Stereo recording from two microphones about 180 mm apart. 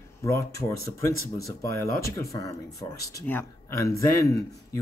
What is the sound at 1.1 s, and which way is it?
Speech, 20° left (ahead or behind).